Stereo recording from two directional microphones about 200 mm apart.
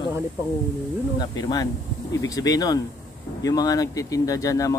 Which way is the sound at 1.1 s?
20° left (ahead or behind).